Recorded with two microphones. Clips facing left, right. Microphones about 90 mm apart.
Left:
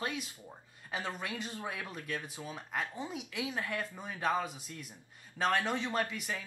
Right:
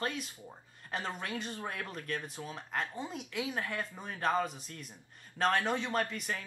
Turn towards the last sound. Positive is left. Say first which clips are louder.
# right 1 dB
turn(degrees=5)  # may be behind; listen again after turning